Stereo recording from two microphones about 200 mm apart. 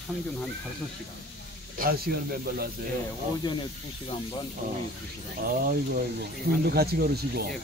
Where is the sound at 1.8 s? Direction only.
50° right (ahead or behind).